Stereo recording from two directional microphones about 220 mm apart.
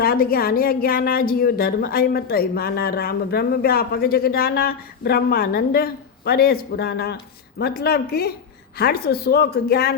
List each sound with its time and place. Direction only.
0.0 s a woman's voice: 45° left (ahead or behind)